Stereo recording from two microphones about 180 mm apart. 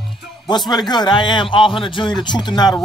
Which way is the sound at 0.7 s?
25° left (ahead or behind).